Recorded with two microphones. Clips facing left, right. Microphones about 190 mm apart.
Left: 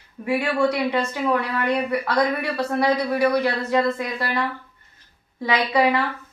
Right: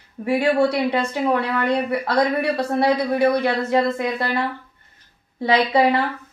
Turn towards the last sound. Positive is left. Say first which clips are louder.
# right 3 dB
turn(degrees=-30)  # may be behind; listen again after turning